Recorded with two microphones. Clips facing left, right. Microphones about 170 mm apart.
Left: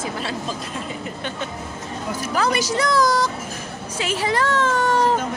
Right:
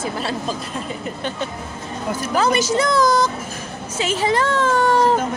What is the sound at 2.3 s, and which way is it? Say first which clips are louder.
A woman's voice: right 3 dB; 25° right (ahead or behind).